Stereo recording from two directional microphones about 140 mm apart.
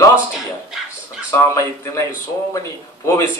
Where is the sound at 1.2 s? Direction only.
20° left (ahead or behind).